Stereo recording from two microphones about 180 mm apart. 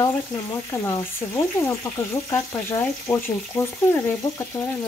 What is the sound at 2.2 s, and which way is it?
Speech, 20° left (ahead or behind).